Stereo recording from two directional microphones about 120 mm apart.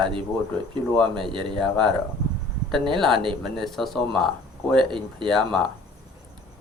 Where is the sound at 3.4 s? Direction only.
Centre (ahead or behind).